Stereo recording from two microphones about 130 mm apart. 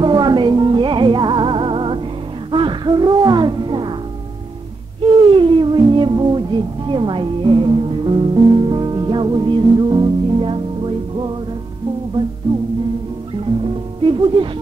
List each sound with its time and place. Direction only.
0.0 s music: 35° right (ahead or behind)
5.0 s music: 40° right (ahead or behind)
14.0 s music: 40° right (ahead or behind)